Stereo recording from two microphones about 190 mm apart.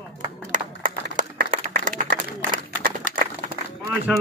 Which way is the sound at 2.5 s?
45° right (ahead or behind).